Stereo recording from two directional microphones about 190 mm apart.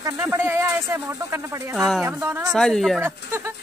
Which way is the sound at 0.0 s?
15° right (ahead or behind).